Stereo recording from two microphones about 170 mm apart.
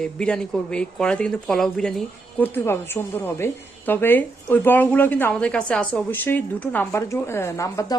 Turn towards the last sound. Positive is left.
turn(degrees=20)  # may be behind; listen again after turning